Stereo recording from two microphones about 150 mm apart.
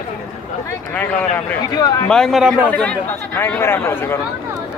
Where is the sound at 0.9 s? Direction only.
10° left (ahead or behind).